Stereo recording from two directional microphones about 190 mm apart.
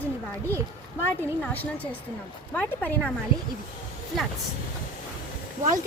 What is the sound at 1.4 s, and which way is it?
Speech, 10° left (ahead or behind).